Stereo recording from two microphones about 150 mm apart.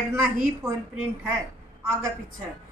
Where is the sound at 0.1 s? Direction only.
15° right (ahead or behind).